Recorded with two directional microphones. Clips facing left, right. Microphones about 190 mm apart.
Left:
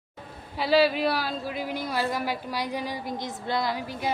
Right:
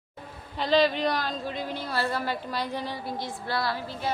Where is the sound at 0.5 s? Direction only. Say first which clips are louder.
Left 1 dB; 10° left (ahead or behind).